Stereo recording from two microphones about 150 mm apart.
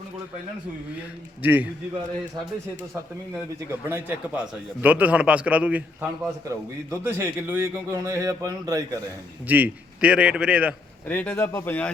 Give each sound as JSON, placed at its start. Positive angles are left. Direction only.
{"t": 1.4, "sound": "a man's voice", "side_deg": -10}
{"t": 3.7, "sound": "a man's voice", "side_deg": -15}
{"t": 9.5, "sound": "a man's voice", "side_deg": -10}
{"t": 11.1, "sound": "speech", "side_deg": 10}